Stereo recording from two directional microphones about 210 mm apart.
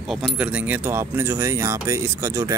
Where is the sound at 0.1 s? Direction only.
Centre (ahead or behind).